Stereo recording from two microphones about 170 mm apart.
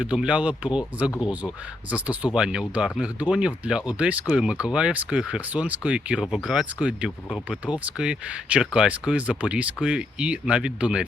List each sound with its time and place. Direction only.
0.0 s speech: 5° right (ahead or behind)